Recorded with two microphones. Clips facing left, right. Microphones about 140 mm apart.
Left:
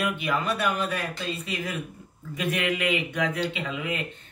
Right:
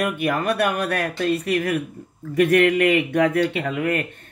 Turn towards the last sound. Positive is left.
turn(degrees=-55)  # may be behind; listen again after turning